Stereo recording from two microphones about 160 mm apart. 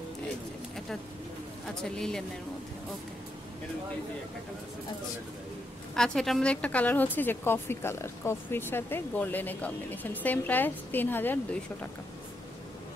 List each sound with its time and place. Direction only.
1.8 s speech: 5° left (ahead or behind)
5.9 s a woman's voice: 5° left (ahead or behind)